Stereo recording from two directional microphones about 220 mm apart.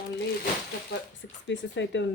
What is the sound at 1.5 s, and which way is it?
Speech, 55° left (ahead or behind).